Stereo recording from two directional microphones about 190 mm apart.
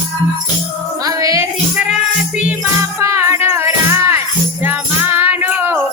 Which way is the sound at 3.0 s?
15° right (ahead or behind).